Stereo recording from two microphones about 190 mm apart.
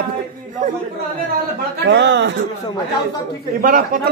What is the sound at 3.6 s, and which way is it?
Speech, 45° right (ahead or behind).